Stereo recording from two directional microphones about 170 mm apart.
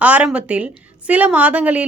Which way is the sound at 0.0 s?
10° right (ahead or behind).